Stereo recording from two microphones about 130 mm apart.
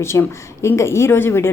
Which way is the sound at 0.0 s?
20° left (ahead or behind).